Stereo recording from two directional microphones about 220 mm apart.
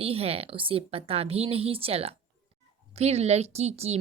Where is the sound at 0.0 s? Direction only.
25° right (ahead or behind).